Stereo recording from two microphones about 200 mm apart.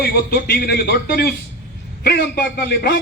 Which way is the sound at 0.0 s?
55° left (ahead or behind).